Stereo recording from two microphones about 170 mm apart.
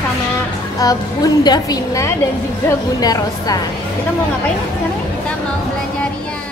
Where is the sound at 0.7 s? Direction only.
20° left (ahead or behind).